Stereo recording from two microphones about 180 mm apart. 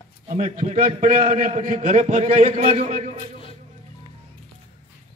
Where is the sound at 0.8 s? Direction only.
50° right (ahead or behind).